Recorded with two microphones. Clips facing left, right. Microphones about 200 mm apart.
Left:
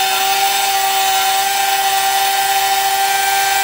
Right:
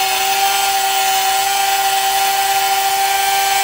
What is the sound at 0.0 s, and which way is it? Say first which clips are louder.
Wood: even; centre (ahead or behind).